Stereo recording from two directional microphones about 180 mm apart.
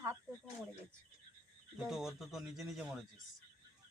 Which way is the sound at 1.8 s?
Centre (ahead or behind).